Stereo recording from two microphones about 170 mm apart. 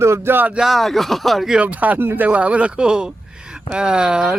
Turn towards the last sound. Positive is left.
turn(degrees=-5)  # may be behind; listen again after turning